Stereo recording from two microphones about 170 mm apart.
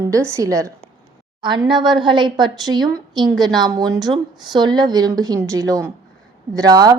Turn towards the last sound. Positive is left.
turn(degrees=-20)  # may be behind; listen again after turning